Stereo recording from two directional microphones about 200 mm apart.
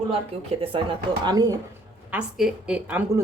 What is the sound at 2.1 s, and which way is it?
Speech, 5° right (ahead or behind).